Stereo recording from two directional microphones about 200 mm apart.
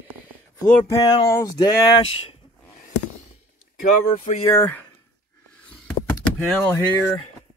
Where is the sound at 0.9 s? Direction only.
20° left (ahead or behind).